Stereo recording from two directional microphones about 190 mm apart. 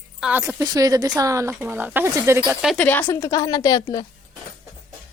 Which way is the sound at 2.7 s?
10° left (ahead or behind).